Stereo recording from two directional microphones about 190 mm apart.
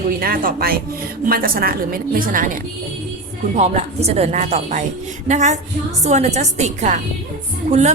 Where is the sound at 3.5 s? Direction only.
35° right (ahead or behind).